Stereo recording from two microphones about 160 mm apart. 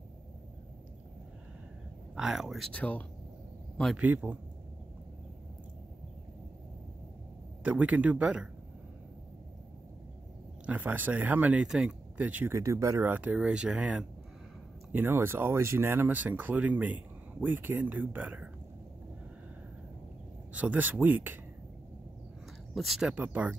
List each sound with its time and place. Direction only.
2.1 s speech: 5° right (ahead or behind)
4.0 s speech: 10° right (ahead or behind)
7.6 s speech: 10° right (ahead or behind)
10.6 s speech: 10° right (ahead or behind)
20.5 s speech: 10° right (ahead or behind)
22.8 s speech: centre (ahead or behind)